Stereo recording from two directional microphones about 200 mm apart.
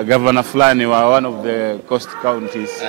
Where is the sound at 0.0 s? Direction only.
15° right (ahead or behind).